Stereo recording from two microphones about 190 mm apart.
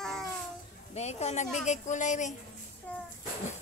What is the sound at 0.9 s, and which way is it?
Speech, 35° left (ahead or behind).